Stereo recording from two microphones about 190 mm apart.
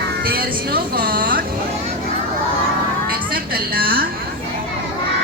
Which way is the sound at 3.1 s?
50° right (ahead or behind).